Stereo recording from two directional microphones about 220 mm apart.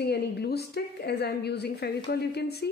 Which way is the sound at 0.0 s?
50° left (ahead or behind).